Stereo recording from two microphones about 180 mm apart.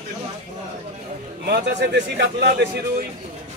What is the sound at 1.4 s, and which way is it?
A man's voice, 65° right (ahead or behind).